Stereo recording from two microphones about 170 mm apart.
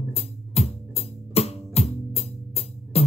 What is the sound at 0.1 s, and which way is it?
Music, 35° left (ahead or behind).